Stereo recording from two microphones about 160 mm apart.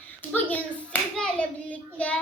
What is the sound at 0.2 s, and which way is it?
Hands, 10° left (ahead or behind).